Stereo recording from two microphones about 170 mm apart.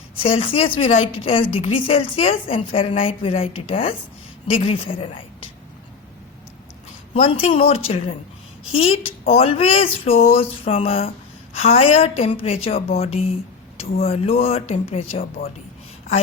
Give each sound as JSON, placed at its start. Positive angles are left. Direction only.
{"t": 0.2, "sound": "a woman's voice", "side_deg": 30}
{"t": 7.1, "sound": "a woman's voice", "side_deg": 35}